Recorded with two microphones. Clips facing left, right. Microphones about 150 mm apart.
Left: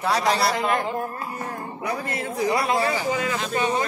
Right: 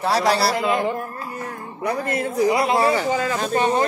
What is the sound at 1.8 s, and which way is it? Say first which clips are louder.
Speech: right 6 dB; 50° right (ahead or behind).